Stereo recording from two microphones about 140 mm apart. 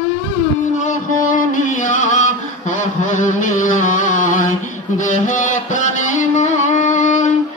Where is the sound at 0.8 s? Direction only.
65° left (ahead or behind).